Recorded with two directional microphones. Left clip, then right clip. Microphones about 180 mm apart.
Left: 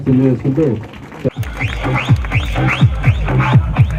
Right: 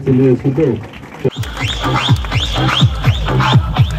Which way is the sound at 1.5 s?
35° left (ahead or behind).